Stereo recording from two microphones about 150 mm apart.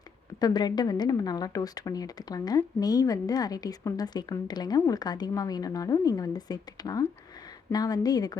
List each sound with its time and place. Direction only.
0.3 s a woman's voice: 25° left (ahead or behind)